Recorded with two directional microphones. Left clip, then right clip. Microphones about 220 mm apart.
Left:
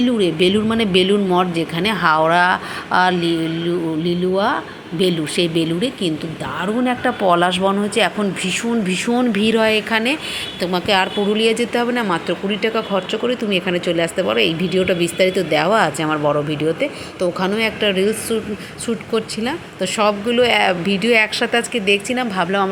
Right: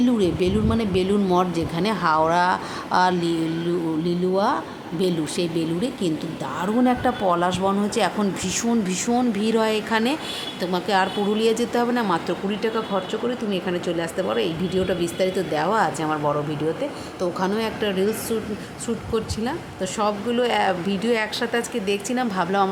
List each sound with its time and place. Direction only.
0.0 s a woman's voice: centre (ahead or behind)